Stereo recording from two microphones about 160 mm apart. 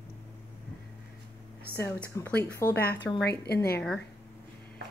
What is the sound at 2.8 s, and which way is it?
A woman's voice, 75° left (ahead or behind).